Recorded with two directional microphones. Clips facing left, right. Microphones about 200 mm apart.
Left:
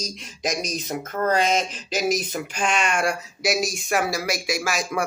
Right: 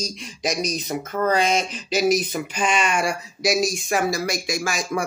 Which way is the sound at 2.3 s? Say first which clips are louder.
Right 2 dB; centre (ahead or behind).